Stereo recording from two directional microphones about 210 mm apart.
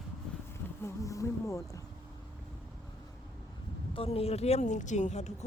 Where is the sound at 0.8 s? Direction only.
15° left (ahead or behind).